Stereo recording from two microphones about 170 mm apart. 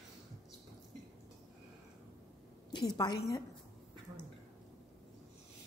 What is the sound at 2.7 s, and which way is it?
Speech, 25° left (ahead or behind).